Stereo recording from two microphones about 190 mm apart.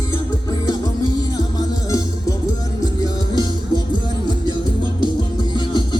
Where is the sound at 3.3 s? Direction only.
20° left (ahead or behind).